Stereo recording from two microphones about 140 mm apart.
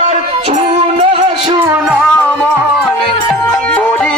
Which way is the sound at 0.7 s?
45° right (ahead or behind).